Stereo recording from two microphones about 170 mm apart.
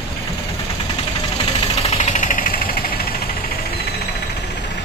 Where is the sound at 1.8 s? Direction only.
40° left (ahead or behind); by 3.1 s 55° left (ahead or behind).